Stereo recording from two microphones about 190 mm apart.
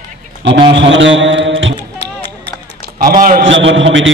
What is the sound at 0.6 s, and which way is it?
Mantra, 75° right (ahead or behind).